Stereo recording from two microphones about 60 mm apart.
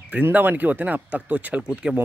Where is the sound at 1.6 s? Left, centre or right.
Centre.